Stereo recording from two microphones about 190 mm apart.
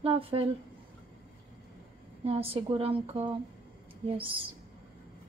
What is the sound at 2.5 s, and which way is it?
Speech, 30° right (ahead or behind).